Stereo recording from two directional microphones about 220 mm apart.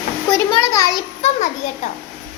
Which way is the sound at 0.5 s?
15° left (ahead or behind).